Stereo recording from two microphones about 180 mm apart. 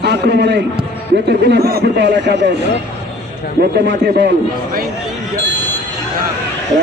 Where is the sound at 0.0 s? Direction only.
70° right (ahead or behind).